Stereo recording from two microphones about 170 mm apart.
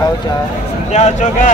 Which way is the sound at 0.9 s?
45° left (ahead or behind).